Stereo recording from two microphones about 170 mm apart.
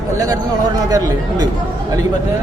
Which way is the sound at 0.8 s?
25° right (ahead or behind).